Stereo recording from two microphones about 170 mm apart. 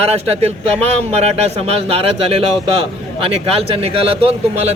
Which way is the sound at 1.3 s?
35° right (ahead or behind).